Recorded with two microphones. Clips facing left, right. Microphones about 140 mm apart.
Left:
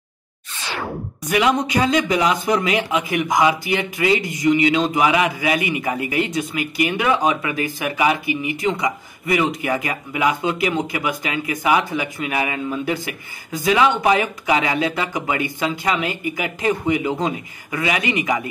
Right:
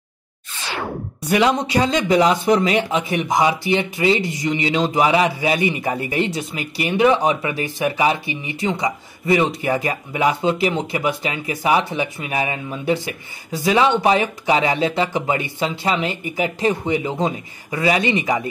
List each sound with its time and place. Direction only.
1.3 s speech: 35° right (ahead or behind)